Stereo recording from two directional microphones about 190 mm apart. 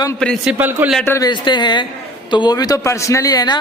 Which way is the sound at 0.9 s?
15° left (ahead or behind).